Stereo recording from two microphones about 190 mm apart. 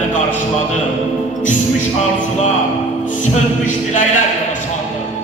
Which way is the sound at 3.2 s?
40° left (ahead or behind).